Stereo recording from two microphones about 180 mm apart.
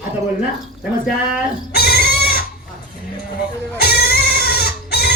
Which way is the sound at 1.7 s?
60° left (ahead or behind).